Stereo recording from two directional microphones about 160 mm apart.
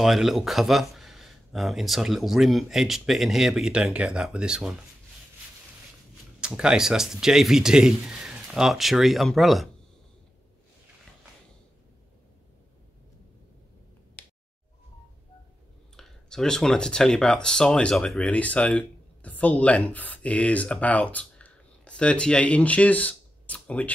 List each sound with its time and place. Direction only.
0.0 s speech: centre (ahead or behind)
6.4 s speech: 5° right (ahead or behind)
16.0 s speech: 5° left (ahead or behind)